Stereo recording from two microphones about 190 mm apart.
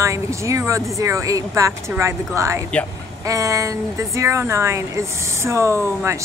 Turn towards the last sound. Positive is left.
turn(degrees=-15)  # may be behind; listen again after turning